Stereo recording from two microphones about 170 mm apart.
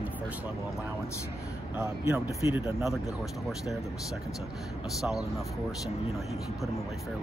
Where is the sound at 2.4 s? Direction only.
15° right (ahead or behind).